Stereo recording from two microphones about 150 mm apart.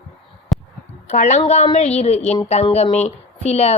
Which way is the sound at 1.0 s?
55° left (ahead or behind).